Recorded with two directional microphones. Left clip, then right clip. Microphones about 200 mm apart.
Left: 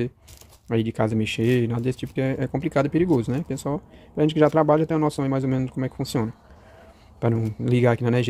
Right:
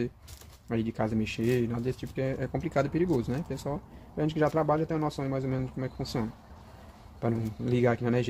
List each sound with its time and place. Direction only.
0.7 s speech: 40° left (ahead or behind)